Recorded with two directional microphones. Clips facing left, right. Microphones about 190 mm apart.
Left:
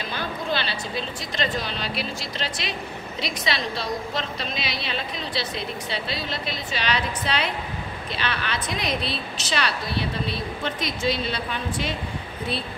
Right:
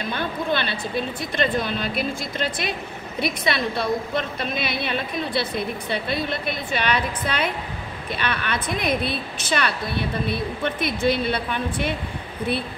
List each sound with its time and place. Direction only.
0.1 s a woman's voice: 55° right (ahead or behind)